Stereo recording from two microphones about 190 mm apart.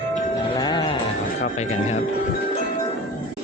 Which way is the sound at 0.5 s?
20° left (ahead or behind).